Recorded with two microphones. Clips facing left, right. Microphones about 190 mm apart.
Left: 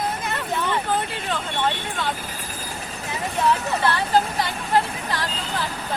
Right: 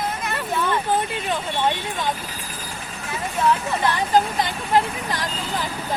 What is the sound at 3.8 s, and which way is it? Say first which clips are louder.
Speech: right 2 dB; 15° right (ahead or behind).